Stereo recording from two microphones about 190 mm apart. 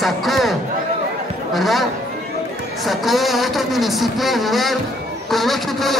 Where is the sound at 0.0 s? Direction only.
Centre (ahead or behind).